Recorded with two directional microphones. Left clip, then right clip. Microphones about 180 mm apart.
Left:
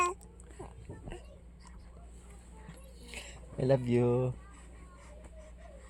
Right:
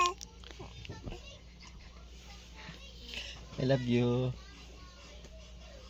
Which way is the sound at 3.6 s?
35° left (ahead or behind).